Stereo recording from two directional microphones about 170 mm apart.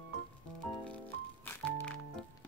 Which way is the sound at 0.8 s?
10° left (ahead or behind).